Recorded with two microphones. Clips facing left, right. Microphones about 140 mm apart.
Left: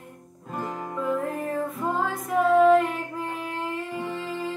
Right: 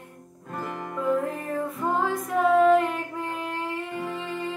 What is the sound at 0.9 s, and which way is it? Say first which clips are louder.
Music: right 2 dB; centre (ahead or behind).